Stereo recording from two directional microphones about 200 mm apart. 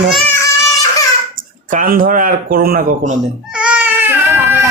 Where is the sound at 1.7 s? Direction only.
40° right (ahead or behind).